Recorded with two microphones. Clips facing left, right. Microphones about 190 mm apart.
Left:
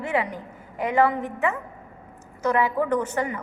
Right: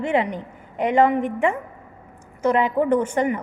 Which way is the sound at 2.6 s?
20° right (ahead or behind).